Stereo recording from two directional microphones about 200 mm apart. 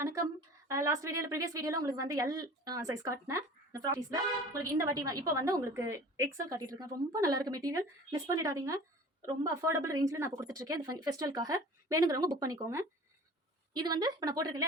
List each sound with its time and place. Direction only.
0.7 s a woman's voice: 15° right (ahead or behind)